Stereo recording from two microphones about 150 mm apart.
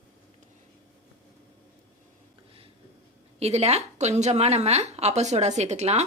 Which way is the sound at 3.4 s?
45° right (ahead or behind).